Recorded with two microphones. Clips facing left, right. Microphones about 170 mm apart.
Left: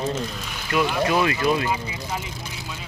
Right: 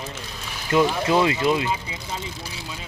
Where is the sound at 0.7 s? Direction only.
25° right (ahead or behind).